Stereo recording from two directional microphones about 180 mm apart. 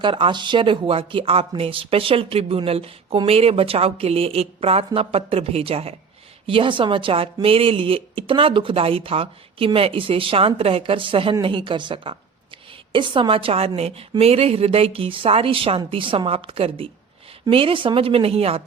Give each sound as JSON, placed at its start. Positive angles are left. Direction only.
{"t": 0.0, "sound": "speech", "side_deg": -25}